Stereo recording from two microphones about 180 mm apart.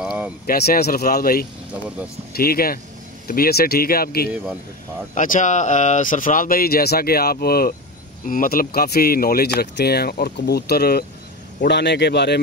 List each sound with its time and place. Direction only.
0.0 s a sound: 5° right (ahead or behind)
0.5 s speech: 60° left (ahead or behind)
5.1 s speech: 45° left (ahead or behind)
11.6 s a man's voice: 70° left (ahead or behind)